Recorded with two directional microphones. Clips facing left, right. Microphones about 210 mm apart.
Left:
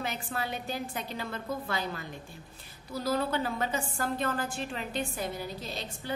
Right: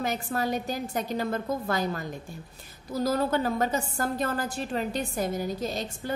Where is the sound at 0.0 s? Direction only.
45° right (ahead or behind).